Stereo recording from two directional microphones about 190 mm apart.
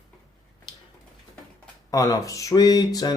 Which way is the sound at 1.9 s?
20° left (ahead or behind).